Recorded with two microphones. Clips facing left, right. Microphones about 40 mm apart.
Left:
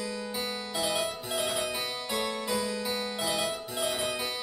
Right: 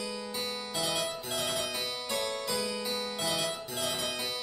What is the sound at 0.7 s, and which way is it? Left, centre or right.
Harpsichord, centre.